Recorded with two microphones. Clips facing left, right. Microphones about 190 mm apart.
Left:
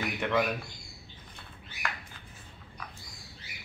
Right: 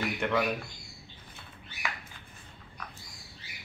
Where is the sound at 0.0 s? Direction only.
5° left (ahead or behind).